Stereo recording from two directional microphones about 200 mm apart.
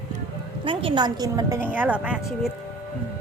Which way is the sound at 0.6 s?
25° right (ahead or behind).